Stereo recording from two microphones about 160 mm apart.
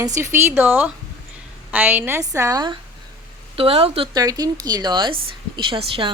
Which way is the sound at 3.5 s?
35° right (ahead or behind).